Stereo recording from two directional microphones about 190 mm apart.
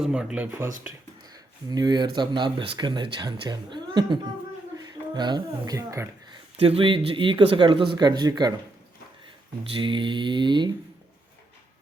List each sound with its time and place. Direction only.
0.0 s speech: 5° right (ahead or behind)
1.7 s speech: 20° right (ahead or behind)
6.6 s speech: 30° right (ahead or behind)
9.7 s speech: 25° right (ahead or behind)